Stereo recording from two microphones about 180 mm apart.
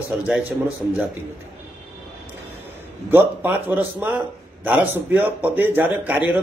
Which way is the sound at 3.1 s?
10° right (ahead or behind).